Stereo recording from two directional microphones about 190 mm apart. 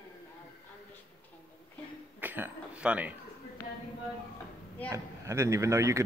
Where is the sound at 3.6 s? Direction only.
15° left (ahead or behind).